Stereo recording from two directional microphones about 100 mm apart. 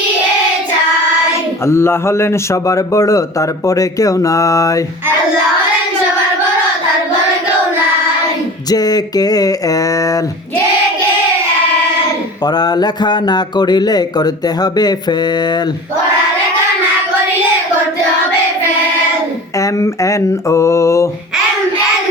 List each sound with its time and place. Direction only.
1.6 s a man's voice: 25° left (ahead or behind)
8.7 s a man's voice: 40° left (ahead or behind)
12.5 s a man's voice: 45° left (ahead or behind)
19.5 s mantra: 30° left (ahead or behind)